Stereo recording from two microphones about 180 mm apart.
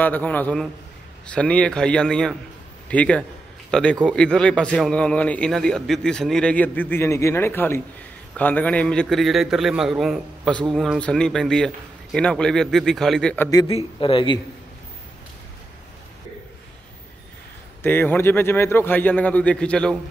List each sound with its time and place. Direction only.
0.0 s a man's voice: 10° left (ahead or behind)
13.7 s speech: 30° left (ahead or behind)
17.8 s speech: 10° left (ahead or behind)